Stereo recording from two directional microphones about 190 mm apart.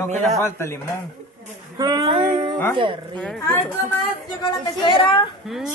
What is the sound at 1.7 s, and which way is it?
Speech, 25° right (ahead or behind).